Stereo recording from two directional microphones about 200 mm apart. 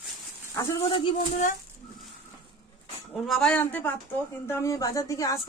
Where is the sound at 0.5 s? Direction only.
20° left (ahead or behind).